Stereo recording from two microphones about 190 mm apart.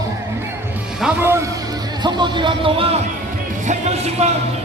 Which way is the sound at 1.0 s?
15° right (ahead or behind).